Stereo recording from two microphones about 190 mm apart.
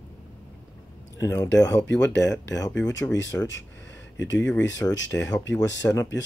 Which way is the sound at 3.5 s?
75° left (ahead or behind).